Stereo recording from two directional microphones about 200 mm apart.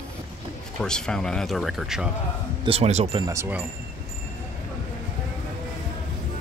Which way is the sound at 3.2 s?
15° right (ahead or behind).